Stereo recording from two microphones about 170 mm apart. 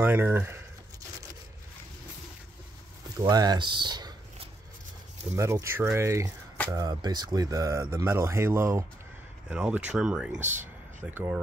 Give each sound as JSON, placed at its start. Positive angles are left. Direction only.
{"t": 0.0, "sound": "speech", "side_deg": -10}
{"t": 3.2, "sound": "a sound", "side_deg": -20}
{"t": 5.3, "sound": "speech", "side_deg": -15}